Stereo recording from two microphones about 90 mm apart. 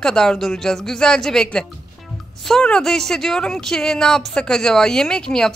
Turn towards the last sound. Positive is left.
turn(degrees=5)  # may be behind; listen again after turning